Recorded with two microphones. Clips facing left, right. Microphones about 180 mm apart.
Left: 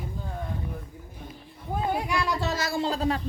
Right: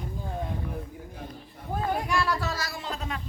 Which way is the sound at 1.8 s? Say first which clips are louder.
Even; 15° left (ahead or behind).